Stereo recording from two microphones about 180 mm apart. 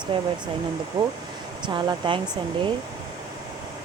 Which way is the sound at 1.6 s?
25° right (ahead or behind).